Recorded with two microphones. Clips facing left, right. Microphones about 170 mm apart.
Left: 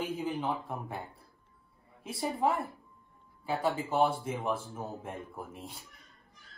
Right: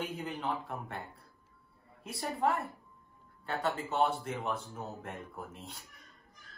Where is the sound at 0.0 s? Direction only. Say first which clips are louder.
Left 4 dB; centre (ahead or behind).